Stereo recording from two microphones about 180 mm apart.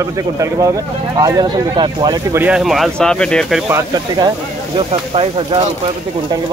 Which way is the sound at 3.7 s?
20° right (ahead or behind).